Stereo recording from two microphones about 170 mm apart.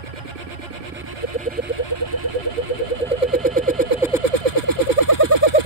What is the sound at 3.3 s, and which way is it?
Vehicle, 50° right (ahead or behind).